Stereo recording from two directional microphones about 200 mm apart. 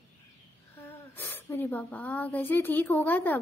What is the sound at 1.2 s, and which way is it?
A woman's voice, 10° left (ahead or behind).